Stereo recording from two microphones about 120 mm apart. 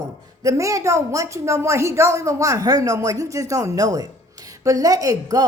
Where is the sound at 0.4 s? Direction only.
25° right (ahead or behind).